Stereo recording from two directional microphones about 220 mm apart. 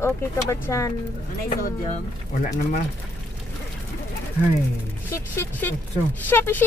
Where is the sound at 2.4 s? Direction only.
30° left (ahead or behind).